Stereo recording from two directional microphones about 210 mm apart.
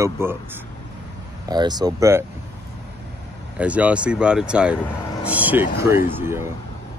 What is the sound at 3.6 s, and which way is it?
Speech, 5° right (ahead or behind).